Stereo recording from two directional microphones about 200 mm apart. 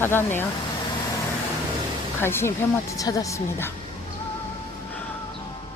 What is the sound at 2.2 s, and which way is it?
Speech, 10° left (ahead or behind).